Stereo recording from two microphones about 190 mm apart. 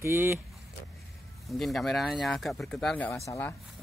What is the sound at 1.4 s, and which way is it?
Speech, centre (ahead or behind).